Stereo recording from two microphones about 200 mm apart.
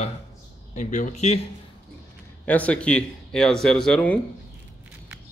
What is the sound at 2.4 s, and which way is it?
Speech, 5° left (ahead or behind).